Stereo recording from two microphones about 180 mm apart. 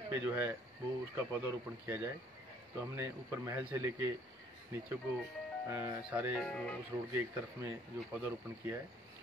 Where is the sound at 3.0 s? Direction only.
15° right (ahead or behind).